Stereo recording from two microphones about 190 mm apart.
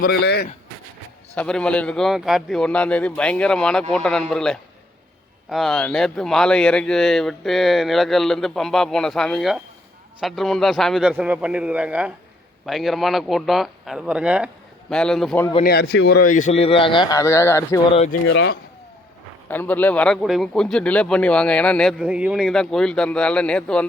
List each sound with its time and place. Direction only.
0.0 s speech: 60° left (ahead or behind)
1.4 s a man's voice: 5° left (ahead or behind)
15.6 s speech: 55° left (ahead or behind)
16.3 s speech: 40° left (ahead or behind); by 17.7 s 15° left (ahead or behind)
18.3 s speech: 70° left (ahead or behind)
19.5 s speech: 10° left (ahead or behind)
22.0 s speech: 5° right (ahead or behind)